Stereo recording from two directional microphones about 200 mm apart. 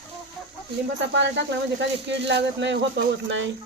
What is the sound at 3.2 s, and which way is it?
Speech, 65° right (ahead or behind).